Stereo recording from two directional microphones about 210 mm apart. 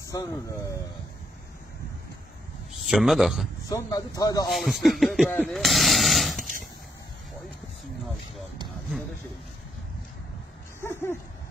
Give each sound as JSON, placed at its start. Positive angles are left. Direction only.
{"t": 0.0, "sound": "speech", "side_deg": 15}
{"t": 2.7, "sound": "a man's voice", "side_deg": 0}
{"t": 3.6, "sound": "speech", "side_deg": 15}
{"t": 4.5, "sound": "speech", "side_deg": 0}
{"t": 10.8, "sound": "speech", "side_deg": 10}